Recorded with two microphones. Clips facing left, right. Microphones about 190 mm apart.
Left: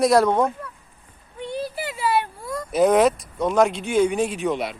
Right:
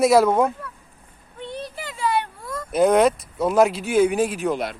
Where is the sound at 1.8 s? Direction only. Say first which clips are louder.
Even; 5° left (ahead or behind).